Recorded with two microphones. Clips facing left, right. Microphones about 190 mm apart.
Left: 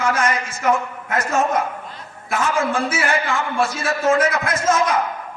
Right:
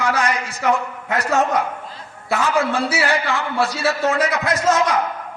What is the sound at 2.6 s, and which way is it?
A man's voice, 35° right (ahead or behind).